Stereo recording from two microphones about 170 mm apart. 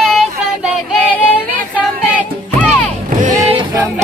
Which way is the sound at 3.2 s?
35° right (ahead or behind).